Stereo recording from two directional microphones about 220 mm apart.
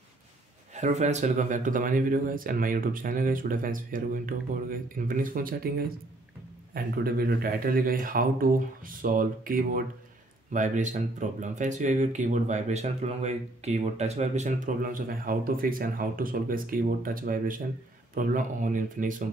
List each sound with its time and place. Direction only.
0.7 s speech: 30° right (ahead or behind)